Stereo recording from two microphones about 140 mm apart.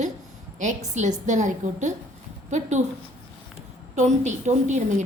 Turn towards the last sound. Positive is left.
turn(degrees=-55)  # may be behind; listen again after turning